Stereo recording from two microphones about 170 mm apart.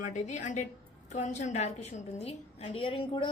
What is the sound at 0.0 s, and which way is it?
A woman's voice, 45° left (ahead or behind).